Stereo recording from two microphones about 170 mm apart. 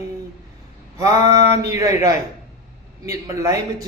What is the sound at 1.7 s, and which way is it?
Speech, 20° right (ahead or behind).